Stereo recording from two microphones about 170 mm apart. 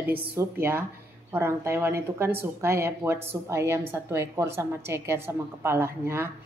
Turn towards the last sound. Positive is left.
turn(degrees=-15)  # may be behind; listen again after turning